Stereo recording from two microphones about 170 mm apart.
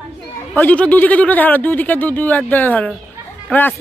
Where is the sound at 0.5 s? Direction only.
10° left (ahead or behind).